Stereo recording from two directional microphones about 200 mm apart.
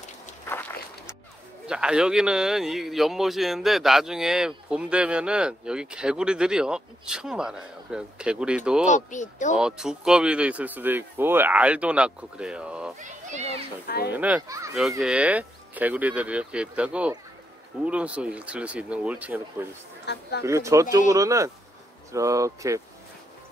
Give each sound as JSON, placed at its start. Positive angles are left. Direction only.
{"t": 0.5, "sound": "walk", "side_deg": 10}
{"t": 1.7, "sound": "speech", "side_deg": -5}
{"t": 8.8, "sound": "speech", "side_deg": 40}
{"t": 9.6, "sound": "speech", "side_deg": -5}
{"t": 13.0, "sound": "a child's voice", "side_deg": -35}
{"t": 13.8, "sound": "speech", "side_deg": 50}
{"t": 14.1, "sound": "speech", "side_deg": -10}
{"t": 20.1, "sound": "speech", "side_deg": 55}
{"t": 20.4, "sound": "speech", "side_deg": -15}